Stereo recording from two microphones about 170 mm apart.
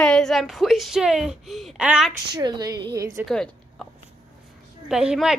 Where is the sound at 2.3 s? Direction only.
25° right (ahead or behind).